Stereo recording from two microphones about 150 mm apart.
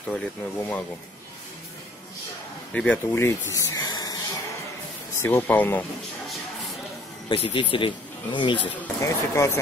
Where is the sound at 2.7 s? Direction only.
10° left (ahead or behind).